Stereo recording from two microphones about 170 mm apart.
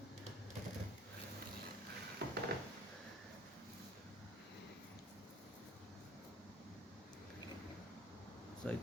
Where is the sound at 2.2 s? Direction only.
75° right (ahead or behind).